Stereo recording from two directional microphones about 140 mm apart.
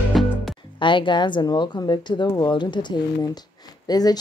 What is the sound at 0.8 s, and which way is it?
Speech, 35° left (ahead or behind).